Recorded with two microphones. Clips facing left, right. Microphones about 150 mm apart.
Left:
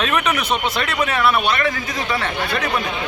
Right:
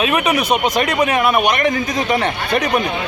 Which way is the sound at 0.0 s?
10° right (ahead or behind).